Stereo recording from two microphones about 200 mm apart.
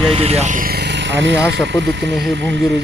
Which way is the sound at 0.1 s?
30° right (ahead or behind).